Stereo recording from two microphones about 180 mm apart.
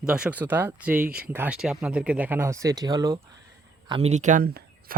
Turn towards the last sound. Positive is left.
turn(degrees=-55)  # may be behind; listen again after turning